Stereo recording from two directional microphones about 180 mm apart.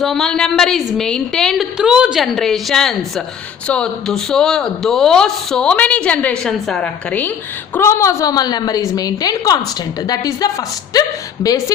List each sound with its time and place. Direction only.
0.0 s a woman's voice: centre (ahead or behind); by 10.5 s 20° left (ahead or behind)